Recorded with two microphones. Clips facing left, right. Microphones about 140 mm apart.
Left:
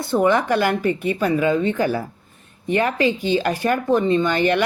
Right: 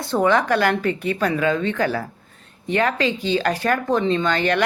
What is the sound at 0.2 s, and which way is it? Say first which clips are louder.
Speech: even; 10° left (ahead or behind).